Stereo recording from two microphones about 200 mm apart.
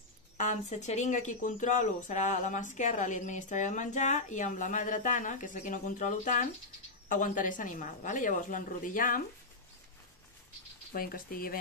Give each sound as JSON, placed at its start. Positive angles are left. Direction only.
{"t": 0.4, "sound": "speech", "side_deg": 35}
{"t": 10.9, "sound": "speech", "side_deg": 45}